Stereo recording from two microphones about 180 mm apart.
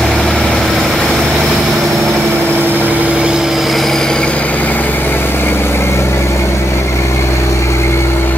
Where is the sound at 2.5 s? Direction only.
10° right (ahead or behind); by 8.4 s 15° left (ahead or behind).